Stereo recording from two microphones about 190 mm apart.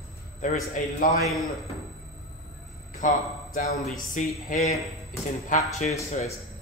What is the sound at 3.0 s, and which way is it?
Speech, 45° left (ahead or behind).